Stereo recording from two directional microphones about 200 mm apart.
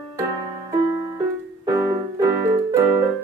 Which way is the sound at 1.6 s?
15° right (ahead or behind).